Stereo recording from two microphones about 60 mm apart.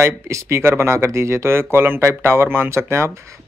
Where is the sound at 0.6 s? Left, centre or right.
Right.